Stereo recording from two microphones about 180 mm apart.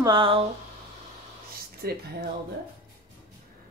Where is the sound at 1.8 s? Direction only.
55° right (ahead or behind).